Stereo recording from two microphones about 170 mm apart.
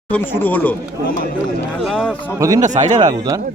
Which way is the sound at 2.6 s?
45° right (ahead or behind).